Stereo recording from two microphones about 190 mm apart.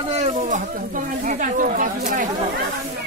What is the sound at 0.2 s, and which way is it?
Speech, 35° right (ahead or behind).